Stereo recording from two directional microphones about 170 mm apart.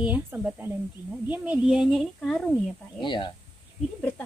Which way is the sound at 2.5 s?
25° left (ahead or behind).